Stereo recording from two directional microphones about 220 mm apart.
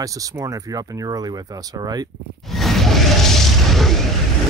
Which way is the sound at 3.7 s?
Centre (ahead or behind).